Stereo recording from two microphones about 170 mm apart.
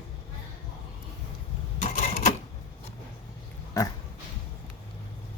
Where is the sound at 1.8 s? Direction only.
45° left (ahead or behind).